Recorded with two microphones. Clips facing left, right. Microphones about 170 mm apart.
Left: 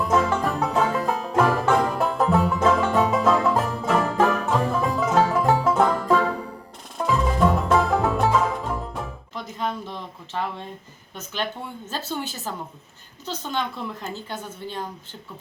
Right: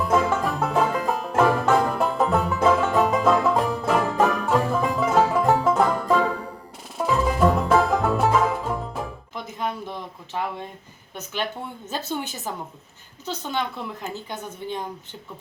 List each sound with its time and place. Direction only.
0.0 s music: centre (ahead or behind)
11.9 s a woman's voice: 15° right (ahead or behind)